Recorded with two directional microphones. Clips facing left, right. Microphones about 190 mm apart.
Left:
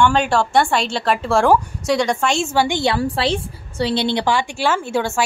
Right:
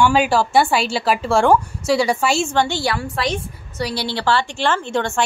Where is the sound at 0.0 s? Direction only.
5° right (ahead or behind).